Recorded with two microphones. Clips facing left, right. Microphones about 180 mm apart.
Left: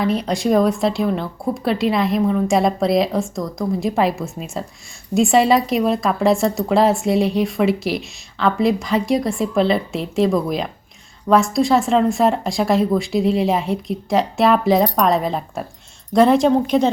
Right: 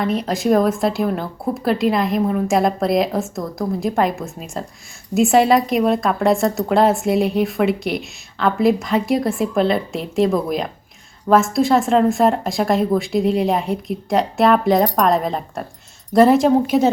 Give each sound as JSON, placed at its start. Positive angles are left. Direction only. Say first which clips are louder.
{"t": 0.0, "sound": "speech", "louder": "even", "side_deg": 0}